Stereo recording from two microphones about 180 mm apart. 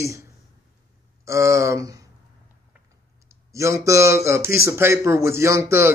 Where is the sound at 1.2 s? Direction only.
15° right (ahead or behind).